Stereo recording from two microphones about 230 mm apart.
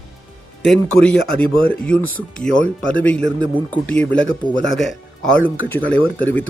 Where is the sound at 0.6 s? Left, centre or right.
Centre.